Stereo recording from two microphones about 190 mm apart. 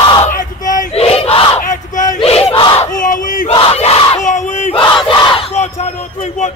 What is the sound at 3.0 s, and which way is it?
Battle cry, 45° left (ahead or behind).